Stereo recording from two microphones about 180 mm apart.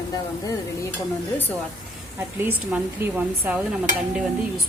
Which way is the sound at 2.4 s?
10° right (ahead or behind).